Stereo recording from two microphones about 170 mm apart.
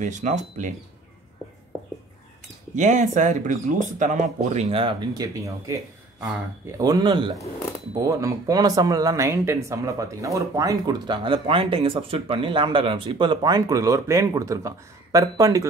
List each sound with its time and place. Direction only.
0.0 s speech: 45° right (ahead or behind)
2.7 s speech: 45° right (ahead or behind); by 5.8 s 20° right (ahead or behind)
6.8 s speech: 25° right (ahead or behind)